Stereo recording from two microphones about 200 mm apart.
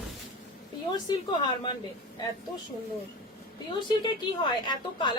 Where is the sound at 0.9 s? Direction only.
20° left (ahead or behind).